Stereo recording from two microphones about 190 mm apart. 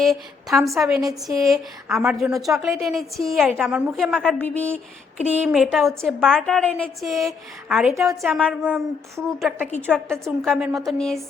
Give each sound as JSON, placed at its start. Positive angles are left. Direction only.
{"t": 0.0, "sound": "a woman's voice", "side_deg": 0}
{"t": 1.0, "sound": "a woman's voice", "side_deg": -15}
{"t": 1.9, "sound": "a woman's voice", "side_deg": 0}
{"t": 5.4, "sound": "a woman's voice", "side_deg": -5}